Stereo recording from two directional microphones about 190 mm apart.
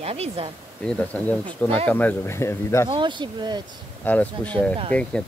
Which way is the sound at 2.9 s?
25° right (ahead or behind).